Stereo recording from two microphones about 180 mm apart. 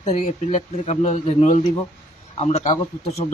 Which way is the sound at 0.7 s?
40° left (ahead or behind).